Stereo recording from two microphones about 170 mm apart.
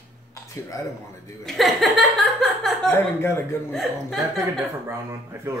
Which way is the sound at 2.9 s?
15° left (ahead or behind).